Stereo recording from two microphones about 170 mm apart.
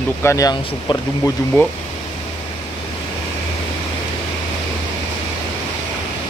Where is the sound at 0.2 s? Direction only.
20° left (ahead or behind).